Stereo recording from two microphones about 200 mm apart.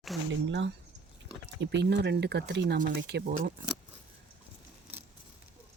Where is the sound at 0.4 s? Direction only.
70° right (ahead or behind); by 3.5 s 50° right (ahead or behind).